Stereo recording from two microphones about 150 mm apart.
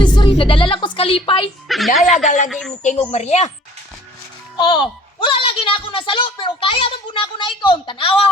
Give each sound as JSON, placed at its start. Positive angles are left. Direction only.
{"t": 0.0, "sound": "a sound", "side_deg": 30}
{"t": 1.6, "sound": "a woman's voice", "side_deg": 0}
{"t": 2.2, "sound": "speech", "side_deg": 55}
{"t": 2.5, "sound": "speech", "side_deg": 0}
{"t": 2.8, "sound": "a woman's voice", "side_deg": 50}
{"t": 4.5, "sound": "a woman's voice", "side_deg": 35}